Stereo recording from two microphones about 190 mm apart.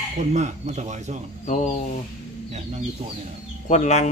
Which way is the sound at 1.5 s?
40° left (ahead or behind).